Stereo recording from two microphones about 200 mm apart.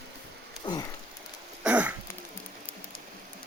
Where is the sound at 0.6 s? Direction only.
20° left (ahead or behind).